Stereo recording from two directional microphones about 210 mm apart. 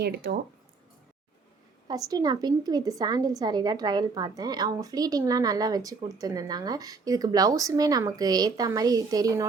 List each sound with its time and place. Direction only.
0.0 s speech: 50° right (ahead or behind)
1.9 s a woman's voice: 20° right (ahead or behind)